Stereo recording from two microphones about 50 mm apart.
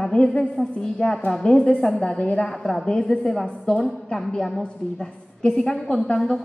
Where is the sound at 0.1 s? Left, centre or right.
Centre.